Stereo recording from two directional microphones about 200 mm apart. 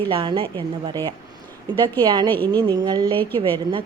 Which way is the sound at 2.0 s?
25° right (ahead or behind).